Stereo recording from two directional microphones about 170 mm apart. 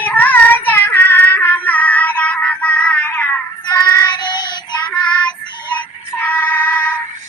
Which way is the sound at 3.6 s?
20° left (ahead or behind).